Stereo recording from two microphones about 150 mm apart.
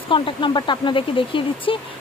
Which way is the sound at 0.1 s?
35° left (ahead or behind).